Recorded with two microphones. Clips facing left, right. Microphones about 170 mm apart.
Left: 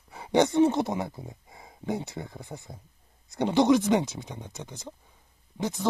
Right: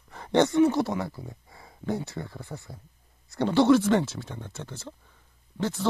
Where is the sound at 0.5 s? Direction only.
25° left (ahead or behind).